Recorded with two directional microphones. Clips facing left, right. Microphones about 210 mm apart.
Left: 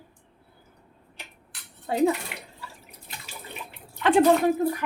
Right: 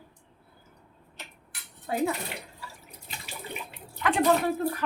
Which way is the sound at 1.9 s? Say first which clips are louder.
Left 4 dB; 25° left (ahead or behind).